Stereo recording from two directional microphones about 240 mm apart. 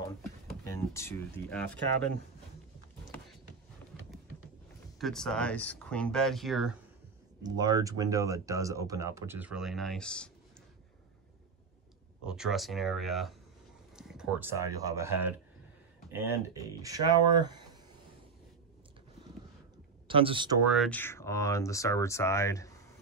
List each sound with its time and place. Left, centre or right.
0.7 s speech: centre
4.9 s speech: centre
7.4 s speech: centre
12.3 s speech: centre
20.1 s speech: right
20.7 s speech: centre